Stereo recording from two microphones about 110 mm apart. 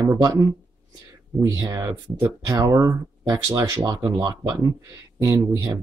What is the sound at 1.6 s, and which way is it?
Speech, 30° right (ahead or behind).